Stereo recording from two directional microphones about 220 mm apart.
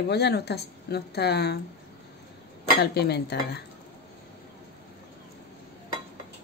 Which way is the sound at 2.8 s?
50° left (ahead or behind).